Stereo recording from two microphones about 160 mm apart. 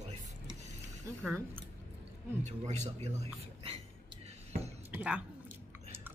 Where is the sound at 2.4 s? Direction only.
45° right (ahead or behind).